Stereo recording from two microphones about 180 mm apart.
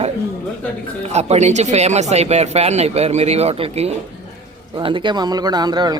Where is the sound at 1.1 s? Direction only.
40° right (ahead or behind).